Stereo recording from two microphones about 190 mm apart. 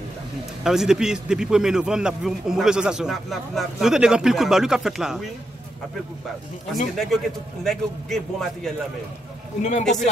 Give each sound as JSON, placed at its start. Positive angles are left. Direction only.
{"t": 0.7, "sound": "a man's voice", "side_deg": -5}
{"t": 6.7, "sound": "a man's voice", "side_deg": 0}
{"t": 9.6, "sound": "speech", "side_deg": 35}